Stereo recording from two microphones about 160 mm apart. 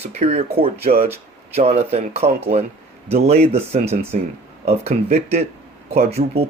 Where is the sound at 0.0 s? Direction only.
40° right (ahead or behind).